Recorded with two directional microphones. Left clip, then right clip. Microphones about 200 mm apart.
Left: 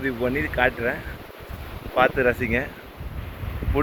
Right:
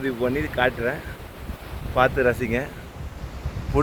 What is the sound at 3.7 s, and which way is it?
Speech, 15° right (ahead or behind).